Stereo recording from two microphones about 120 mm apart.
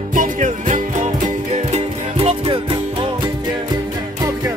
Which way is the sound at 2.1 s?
50° right (ahead or behind).